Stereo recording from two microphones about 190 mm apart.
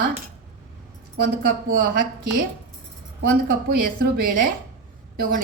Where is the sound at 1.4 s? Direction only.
50° right (ahead or behind).